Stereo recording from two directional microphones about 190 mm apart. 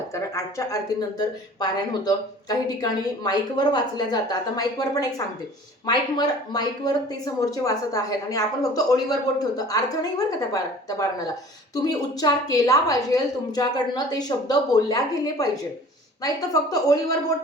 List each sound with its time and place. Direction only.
0.2 s speech: 15° left (ahead or behind)